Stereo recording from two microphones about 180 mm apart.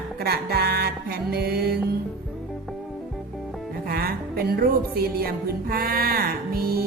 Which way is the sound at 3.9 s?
55° right (ahead or behind).